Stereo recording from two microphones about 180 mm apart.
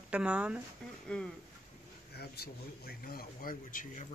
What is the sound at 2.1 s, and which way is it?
A man's voice, 60° left (ahead or behind).